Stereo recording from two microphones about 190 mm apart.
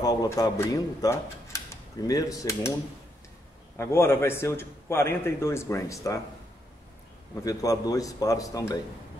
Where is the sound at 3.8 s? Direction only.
15° left (ahead or behind).